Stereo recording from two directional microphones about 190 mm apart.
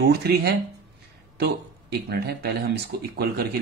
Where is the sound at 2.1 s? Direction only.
55° right (ahead or behind).